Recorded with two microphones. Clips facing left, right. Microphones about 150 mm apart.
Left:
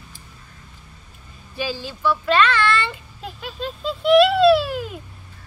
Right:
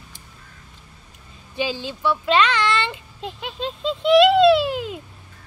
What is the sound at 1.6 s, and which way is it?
Speech, 20° right (ahead or behind).